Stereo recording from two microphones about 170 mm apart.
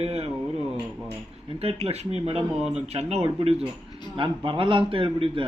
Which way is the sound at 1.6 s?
35° right (ahead or behind).